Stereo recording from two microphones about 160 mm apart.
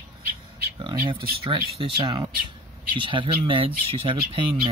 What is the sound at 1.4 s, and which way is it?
Speech, 35° right (ahead or behind).